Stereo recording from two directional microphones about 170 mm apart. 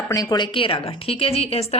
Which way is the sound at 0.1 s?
20° left (ahead or behind).